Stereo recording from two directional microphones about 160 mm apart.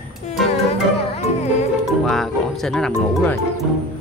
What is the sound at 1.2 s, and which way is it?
Music, 40° left (ahead or behind).